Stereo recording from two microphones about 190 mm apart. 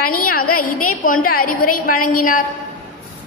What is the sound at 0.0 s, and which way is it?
A woman's voice, 50° left (ahead or behind).